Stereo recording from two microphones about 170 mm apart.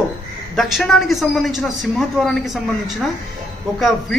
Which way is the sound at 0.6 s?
Centre (ahead or behind).